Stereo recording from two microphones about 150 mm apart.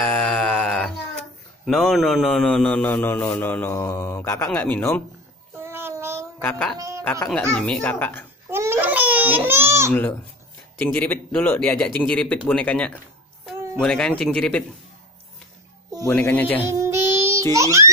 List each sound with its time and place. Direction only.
0.0 s a sound: 5° left (ahead or behind)
1.7 s a man's voice: centre (ahead or behind)
5.6 s child singing: 15° right (ahead or behind)
6.4 s a man's voice: 5° left (ahead or behind)
8.5 s baby cry: 15° right (ahead or behind)
10.8 s a man's voice: 10° left (ahead or behind)
16.1 s a man's voice: 10° left (ahead or behind)
16.7 s music: 20° right (ahead or behind)